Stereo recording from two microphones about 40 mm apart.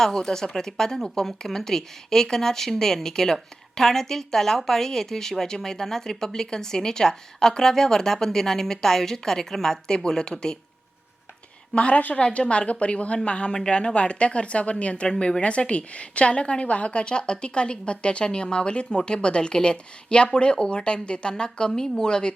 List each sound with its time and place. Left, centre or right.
0.0 s speech: centre
11.7 s a woman's voice: left
12.1 s a woman's voice: left